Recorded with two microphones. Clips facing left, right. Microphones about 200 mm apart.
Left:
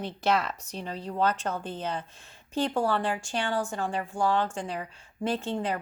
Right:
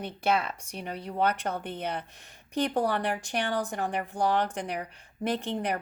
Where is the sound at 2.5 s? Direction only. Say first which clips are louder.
Even; 15° right (ahead or behind).